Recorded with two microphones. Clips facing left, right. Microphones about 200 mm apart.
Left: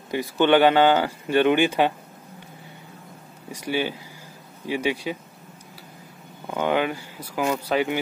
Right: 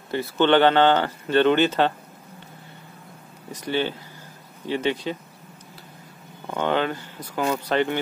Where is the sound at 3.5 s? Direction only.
10° left (ahead or behind).